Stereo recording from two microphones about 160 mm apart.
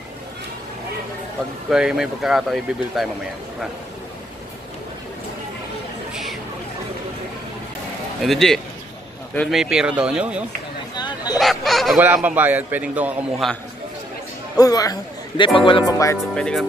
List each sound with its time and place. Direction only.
1.7 s speech: 5° right (ahead or behind)
8.2 s a man's voice: centre (ahead or behind)
11.0 s a sound: 25° left (ahead or behind)
11.3 s a sound: centre (ahead or behind)
12.0 s a man's voice: 10° right (ahead or behind)
14.6 s speech: 20° left (ahead or behind)
16.3 s speech: 5° left (ahead or behind)